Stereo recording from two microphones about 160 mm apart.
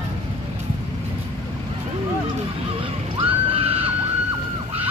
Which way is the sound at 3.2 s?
35° right (ahead or behind).